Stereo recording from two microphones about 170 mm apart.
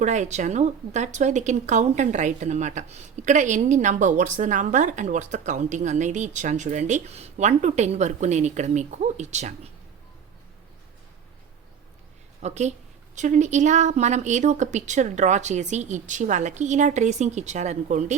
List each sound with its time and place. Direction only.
0.0 s speech: 45° right (ahead or behind)
12.4 s speech: 40° right (ahead or behind)